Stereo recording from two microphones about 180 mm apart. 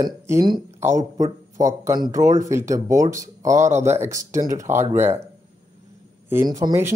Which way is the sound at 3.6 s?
40° right (ahead or behind).